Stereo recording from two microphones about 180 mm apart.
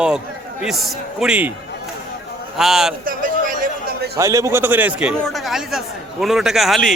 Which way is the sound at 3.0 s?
50° right (ahead or behind).